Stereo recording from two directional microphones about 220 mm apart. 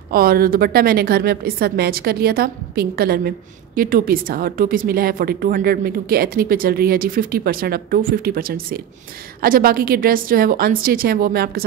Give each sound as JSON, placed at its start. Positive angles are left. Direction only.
{"t": 0.1, "sound": "a woman's voice", "side_deg": -40}